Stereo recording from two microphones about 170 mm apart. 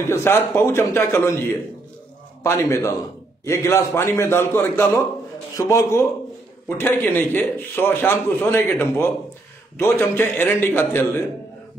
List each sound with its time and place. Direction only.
0.0 s a man's voice: 15° left (ahead or behind)
2.4 s a man's voice: 15° left (ahead or behind)